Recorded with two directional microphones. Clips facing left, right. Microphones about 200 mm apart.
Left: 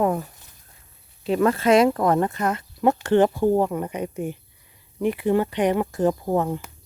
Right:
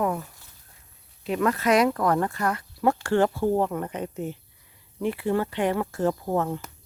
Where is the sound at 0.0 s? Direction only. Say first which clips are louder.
Left 4 dB; 35° left (ahead or behind).